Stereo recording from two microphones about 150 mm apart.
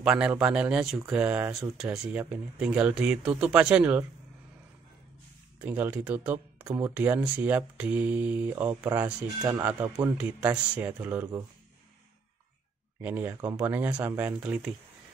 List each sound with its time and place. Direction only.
0.0 s speech: 5° right (ahead or behind)
5.6 s speech: 10° right (ahead or behind)
13.0 s speech: 10° right (ahead or behind)